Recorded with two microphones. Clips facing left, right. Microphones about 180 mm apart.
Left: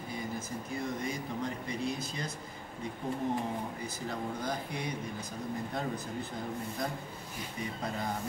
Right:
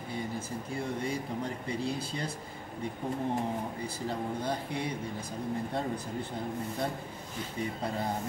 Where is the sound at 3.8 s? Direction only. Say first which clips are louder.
Right 3 dB; 30° right (ahead or behind).